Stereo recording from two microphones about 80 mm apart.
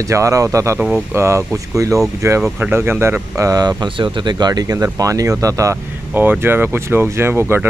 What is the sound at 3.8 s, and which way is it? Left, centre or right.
Speech, right.